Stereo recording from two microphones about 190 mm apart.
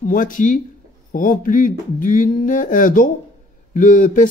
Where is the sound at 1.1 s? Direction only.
45° left (ahead or behind).